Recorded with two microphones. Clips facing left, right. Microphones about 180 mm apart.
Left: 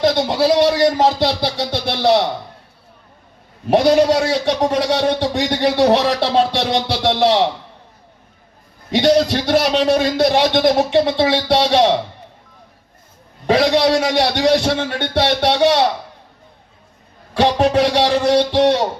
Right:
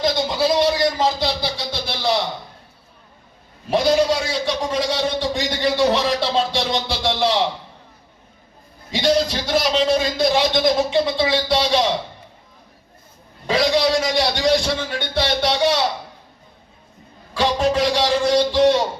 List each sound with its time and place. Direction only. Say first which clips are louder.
0.0 s a man's voice: left 4 dB; 65° left (ahead or behind)
3.7 s a man's voice: left 5 dB; 65° left (ahead or behind)
8.9 s a man's voice: left 5 dB; 65° left (ahead or behind)
13.5 s a man's voice: left 4 dB; 65° left (ahead or behind)
17.3 s a man's voice: left 4 dB; 65° left (ahead or behind)